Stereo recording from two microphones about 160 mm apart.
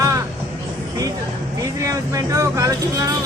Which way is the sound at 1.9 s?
20° right (ahead or behind).